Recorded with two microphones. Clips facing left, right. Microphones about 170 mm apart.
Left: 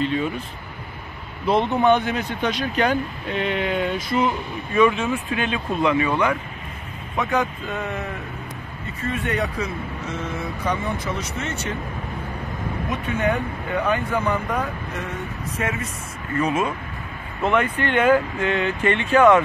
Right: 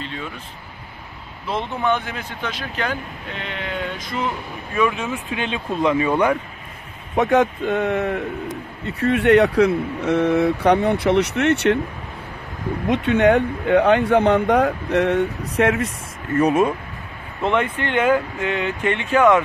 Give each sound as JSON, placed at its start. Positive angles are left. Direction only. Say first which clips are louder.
{"t": 1.4, "sound": "speech", "louder": "left 5 dB", "side_deg": 20}
{"t": 4.7, "sound": "speech", "louder": "left 3 dB", "side_deg": -10}
{"t": 5.9, "sound": "speech", "louder": "right 3 dB", "side_deg": -30}
{"t": 7.2, "sound": "speech", "louder": "right 6 dB", "side_deg": -50}
{"t": 8.8, "sound": "speech", "louder": "right 10 dB", "side_deg": -70}
{"t": 12.8, "sound": "speech", "louder": "right 8 dB", "side_deg": -70}
{"t": 16.3, "sound": "speech", "louder": "right 5 dB", "side_deg": -40}
{"t": 17.5, "sound": "speech", "louder": "even", "side_deg": -20}